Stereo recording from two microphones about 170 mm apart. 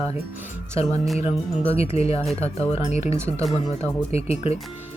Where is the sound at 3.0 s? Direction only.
15° right (ahead or behind).